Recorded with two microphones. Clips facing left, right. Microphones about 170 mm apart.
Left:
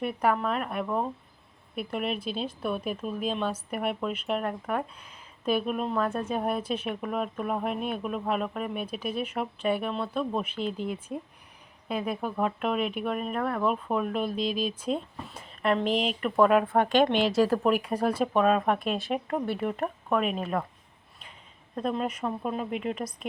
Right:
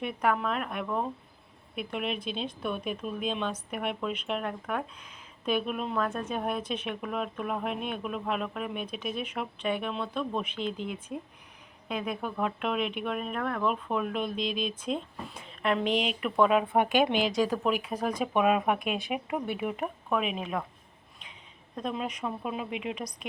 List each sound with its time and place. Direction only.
0.0 s speech: 5° left (ahead or behind)
10.7 s speech: 40° left (ahead or behind)
11.9 s speech: 5° left (ahead or behind)
14.3 s speech: 35° left (ahead or behind)
14.8 s speech: 5° left (ahead or behind)
18.3 s speech: 10° right (ahead or behind)
21.8 s speech: 5° left (ahead or behind)